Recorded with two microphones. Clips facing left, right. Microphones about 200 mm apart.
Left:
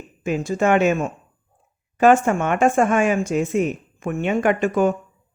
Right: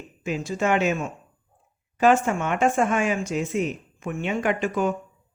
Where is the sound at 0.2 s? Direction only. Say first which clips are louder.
Left 5 dB; 50° left (ahead or behind).